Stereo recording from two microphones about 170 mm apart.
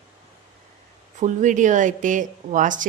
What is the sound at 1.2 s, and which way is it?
Speech, 45° right (ahead or behind).